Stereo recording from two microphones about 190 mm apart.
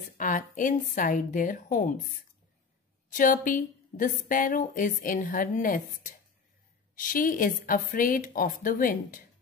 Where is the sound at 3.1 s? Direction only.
45° left (ahead or behind).